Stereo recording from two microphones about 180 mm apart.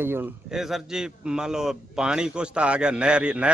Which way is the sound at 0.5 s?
Centre (ahead or behind).